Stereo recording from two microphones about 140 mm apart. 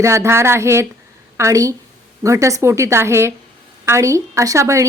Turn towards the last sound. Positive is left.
turn(degrees=-20)  # may be behind; listen again after turning